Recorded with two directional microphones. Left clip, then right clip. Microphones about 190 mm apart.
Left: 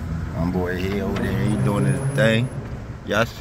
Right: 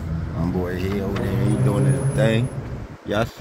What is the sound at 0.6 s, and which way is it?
Speech, 5° right (ahead or behind).